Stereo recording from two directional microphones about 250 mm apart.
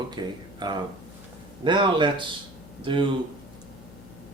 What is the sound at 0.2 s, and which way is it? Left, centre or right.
A man's voice, centre.